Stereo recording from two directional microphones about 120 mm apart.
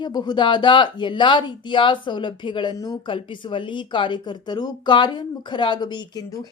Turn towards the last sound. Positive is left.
turn(degrees=35)  # may be behind; listen again after turning